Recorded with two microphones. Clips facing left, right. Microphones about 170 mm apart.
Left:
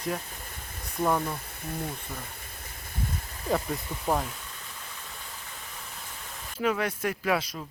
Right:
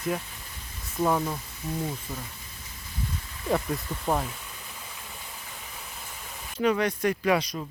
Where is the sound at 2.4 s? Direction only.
55° left (ahead or behind).